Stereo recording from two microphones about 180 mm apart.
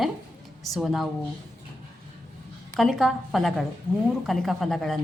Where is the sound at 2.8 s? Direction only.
Centre (ahead or behind).